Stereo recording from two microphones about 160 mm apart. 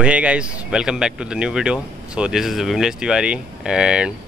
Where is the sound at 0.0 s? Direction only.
10° right (ahead or behind).